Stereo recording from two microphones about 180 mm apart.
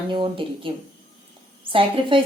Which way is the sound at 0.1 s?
30° right (ahead or behind).